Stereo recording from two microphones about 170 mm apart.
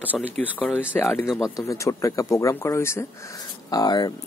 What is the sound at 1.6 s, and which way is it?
Speech, 20° left (ahead or behind).